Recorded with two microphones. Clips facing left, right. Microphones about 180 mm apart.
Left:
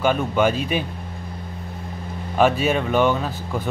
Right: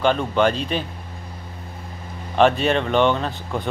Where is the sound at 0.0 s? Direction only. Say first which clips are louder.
Even; 10° left (ahead or behind).